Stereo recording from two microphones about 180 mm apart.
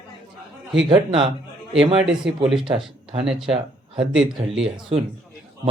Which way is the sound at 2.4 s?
5° right (ahead or behind).